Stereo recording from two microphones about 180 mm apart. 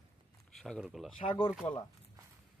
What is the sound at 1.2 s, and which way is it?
Speech, 30° left (ahead or behind).